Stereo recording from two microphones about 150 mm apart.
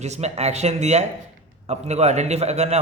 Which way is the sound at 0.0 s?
45° right (ahead or behind).